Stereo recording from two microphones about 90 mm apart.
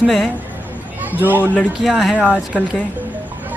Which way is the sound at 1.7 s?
Centre (ahead or behind).